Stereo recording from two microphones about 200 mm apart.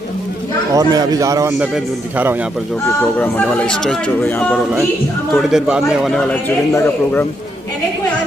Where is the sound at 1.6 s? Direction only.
5° right (ahead or behind).